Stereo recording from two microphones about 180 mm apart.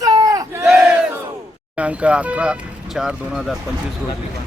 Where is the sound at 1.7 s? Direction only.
5° right (ahead or behind).